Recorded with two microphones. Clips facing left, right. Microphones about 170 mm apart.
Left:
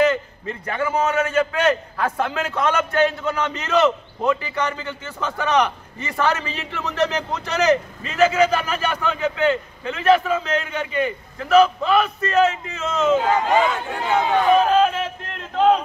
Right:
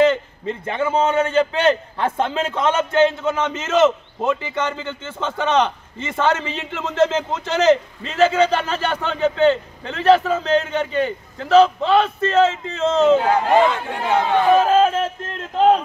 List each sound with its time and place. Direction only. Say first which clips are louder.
0.0 s a man's voice: right 3 dB; 25° right (ahead or behind)
13.5 s speech: right 3 dB; centre (ahead or behind)
14.8 s music: right 2 dB; 45° right (ahead or behind)